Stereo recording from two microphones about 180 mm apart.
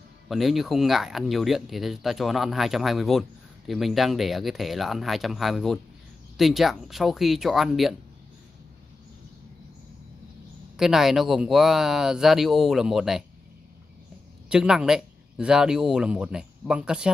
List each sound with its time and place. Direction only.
0.3 s speech: centre (ahead or behind)
10.8 s speech: centre (ahead or behind)
14.5 s speech: 5° right (ahead or behind)